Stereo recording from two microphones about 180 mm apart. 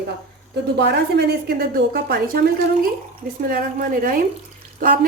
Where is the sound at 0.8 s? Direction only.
65° right (ahead or behind).